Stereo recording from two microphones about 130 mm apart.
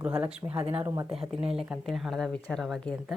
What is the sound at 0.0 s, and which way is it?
Speech, 10° right (ahead or behind).